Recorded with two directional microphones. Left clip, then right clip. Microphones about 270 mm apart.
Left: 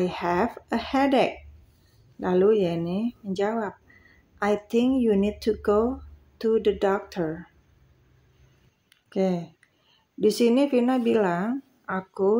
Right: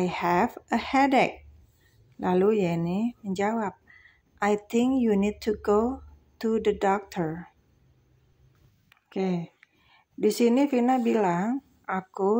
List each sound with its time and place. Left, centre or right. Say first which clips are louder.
0.0 s speech: even; centre
9.1 s speech: left 4 dB; centre